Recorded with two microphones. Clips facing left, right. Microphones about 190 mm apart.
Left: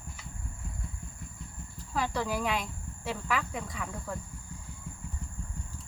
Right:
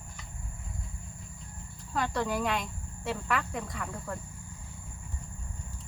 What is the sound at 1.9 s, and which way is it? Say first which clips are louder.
Speech: right 1 dB; centre (ahead or behind).